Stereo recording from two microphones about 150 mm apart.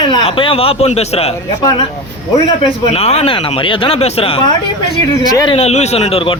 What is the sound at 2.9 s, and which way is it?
A man's voice, 45° left (ahead or behind).